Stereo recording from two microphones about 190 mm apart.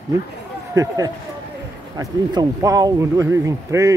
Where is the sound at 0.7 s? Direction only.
15° right (ahead or behind).